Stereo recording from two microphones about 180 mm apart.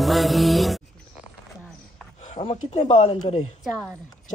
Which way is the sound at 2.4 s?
30° left (ahead or behind).